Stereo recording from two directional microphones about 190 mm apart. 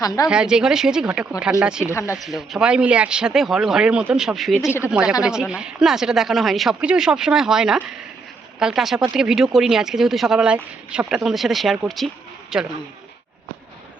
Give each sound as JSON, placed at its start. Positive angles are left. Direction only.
{"t": 0.0, "sound": "a woman's voice", "side_deg": 20}
{"t": 0.3, "sound": "speech", "side_deg": -5}
{"t": 1.9, "sound": "speech", "side_deg": 15}
{"t": 2.1, "sound": "a woman's voice", "side_deg": 0}